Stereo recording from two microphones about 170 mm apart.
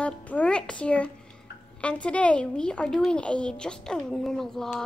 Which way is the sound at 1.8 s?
5° left (ahead or behind).